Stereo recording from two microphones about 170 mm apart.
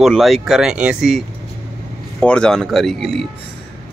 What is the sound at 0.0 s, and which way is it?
Speech, centre (ahead or behind).